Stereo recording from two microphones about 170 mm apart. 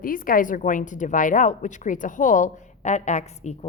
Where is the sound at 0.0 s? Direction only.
55° left (ahead or behind).